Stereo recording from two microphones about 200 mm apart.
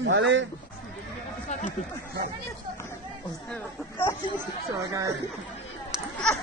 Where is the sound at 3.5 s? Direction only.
10° left (ahead or behind).